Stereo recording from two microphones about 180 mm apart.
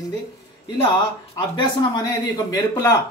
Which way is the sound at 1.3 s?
25° left (ahead or behind).